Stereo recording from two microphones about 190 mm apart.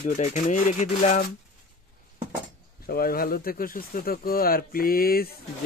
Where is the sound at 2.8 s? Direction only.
50° left (ahead or behind).